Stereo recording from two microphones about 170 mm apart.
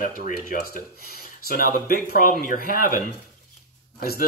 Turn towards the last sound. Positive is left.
turn(degrees=60)  # may be behind; listen again after turning